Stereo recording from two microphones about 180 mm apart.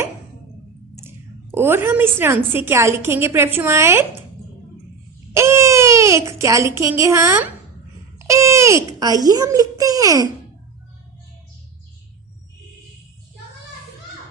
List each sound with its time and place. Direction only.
1.0 s a woman's voice: 15° right (ahead or behind)
5.3 s a child's voice: 15° right (ahead or behind)